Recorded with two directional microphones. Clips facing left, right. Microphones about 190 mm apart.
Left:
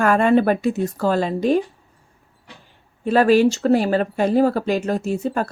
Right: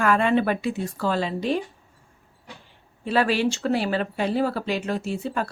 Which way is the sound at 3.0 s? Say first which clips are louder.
Left 7 dB; 45° left (ahead or behind).